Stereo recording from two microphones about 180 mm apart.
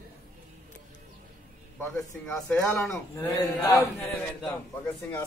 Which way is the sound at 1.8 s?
15° left (ahead or behind).